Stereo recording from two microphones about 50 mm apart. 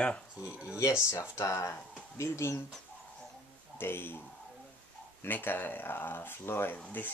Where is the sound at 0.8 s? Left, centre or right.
Left.